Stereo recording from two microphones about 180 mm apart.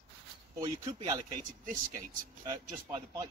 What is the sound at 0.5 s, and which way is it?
Speech, 20° right (ahead or behind).